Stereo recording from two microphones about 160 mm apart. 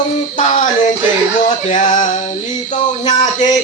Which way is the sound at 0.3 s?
50° left (ahead or behind).